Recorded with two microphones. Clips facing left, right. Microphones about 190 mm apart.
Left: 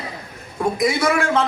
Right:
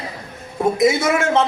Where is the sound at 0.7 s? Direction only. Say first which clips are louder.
Right 2 dB; 25° right (ahead or behind).